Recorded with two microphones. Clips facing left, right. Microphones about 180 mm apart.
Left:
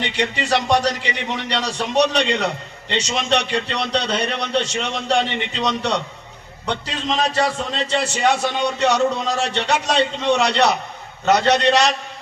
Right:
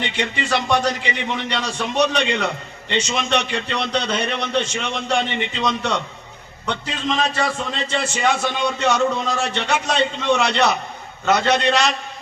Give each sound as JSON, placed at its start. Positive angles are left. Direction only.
{"t": 0.2, "sound": "a man's voice", "side_deg": 40}